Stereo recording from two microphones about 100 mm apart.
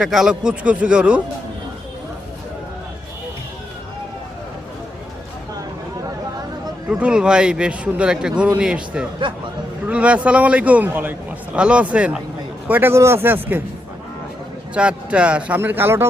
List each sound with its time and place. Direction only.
0.0 s a man's voice: 5° right (ahead or behind)
6.8 s a man's voice: 10° right (ahead or behind)
14.8 s a man's voice: 10° right (ahead or behind)